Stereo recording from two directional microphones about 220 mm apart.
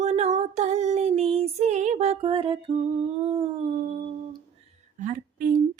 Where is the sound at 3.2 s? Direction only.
30° right (ahead or behind).